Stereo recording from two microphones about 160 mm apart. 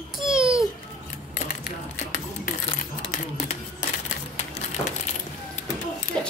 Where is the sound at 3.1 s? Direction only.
50° left (ahead or behind).